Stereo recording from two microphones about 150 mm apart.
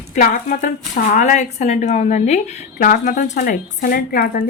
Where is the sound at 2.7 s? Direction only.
65° left (ahead or behind).